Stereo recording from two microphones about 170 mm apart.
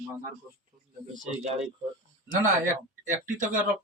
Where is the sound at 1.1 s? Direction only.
45° right (ahead or behind).